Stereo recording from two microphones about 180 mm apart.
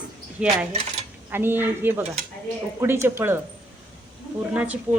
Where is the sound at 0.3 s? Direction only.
5° right (ahead or behind).